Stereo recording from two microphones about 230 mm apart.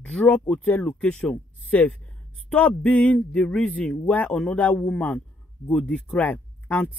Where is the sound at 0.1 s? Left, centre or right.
Centre.